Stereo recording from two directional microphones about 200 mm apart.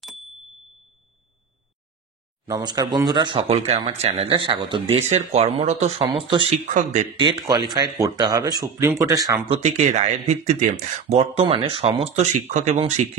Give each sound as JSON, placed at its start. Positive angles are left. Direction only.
{"t": 0.0, "sound": "a sound", "side_deg": 0}
{"t": 2.4, "sound": "speech", "side_deg": -20}
{"t": 6.7, "sound": "speech", "side_deg": -35}
{"t": 7.2, "sound": "speech", "side_deg": -20}
{"t": 9.6, "sound": "speech", "side_deg": -35}